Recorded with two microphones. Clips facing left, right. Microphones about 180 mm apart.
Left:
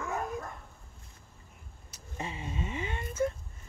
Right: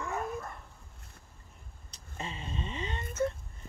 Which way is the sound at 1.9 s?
15° left (ahead or behind).